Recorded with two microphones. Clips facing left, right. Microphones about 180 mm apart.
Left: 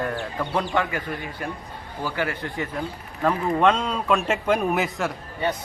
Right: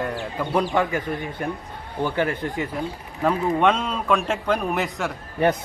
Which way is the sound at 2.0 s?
25° right (ahead or behind).